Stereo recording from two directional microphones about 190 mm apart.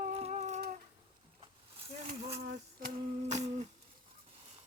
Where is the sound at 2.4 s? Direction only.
55° right (ahead or behind); by 3.5 s 40° right (ahead or behind).